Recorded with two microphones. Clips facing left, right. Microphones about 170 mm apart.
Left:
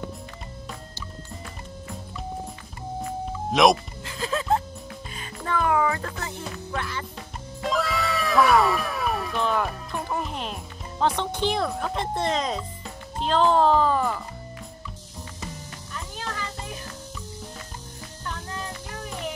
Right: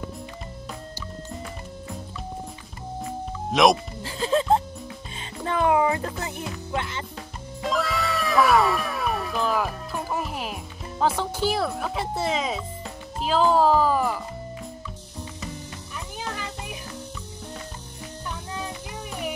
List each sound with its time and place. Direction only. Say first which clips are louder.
3.5 s speech: even; centre (ahead or behind)
4.0 s speech: right 5 dB; 30° right (ahead or behind)
7.6 s music: even; centre (ahead or behind)
16.2 s music: right 1 dB; 15° right (ahead or behind)
18.2 s music: even; 10° right (ahead or behind)